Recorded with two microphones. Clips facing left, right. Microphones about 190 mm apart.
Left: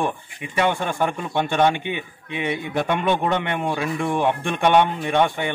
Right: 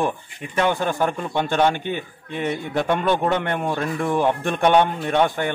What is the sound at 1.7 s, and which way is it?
Speech, 70° left (ahead or behind).